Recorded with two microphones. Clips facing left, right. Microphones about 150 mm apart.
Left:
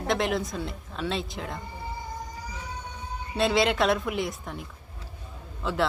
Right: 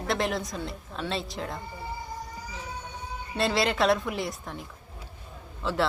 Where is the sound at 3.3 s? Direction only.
Centre (ahead or behind).